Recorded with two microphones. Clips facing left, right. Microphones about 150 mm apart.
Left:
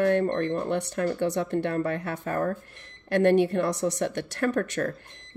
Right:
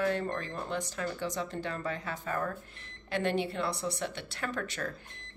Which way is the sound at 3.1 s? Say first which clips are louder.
Left 10 dB; 65° left (ahead or behind).